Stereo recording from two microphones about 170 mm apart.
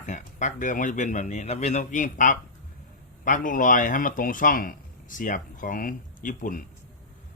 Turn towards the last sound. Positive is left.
turn(degrees=50)  # may be behind; listen again after turning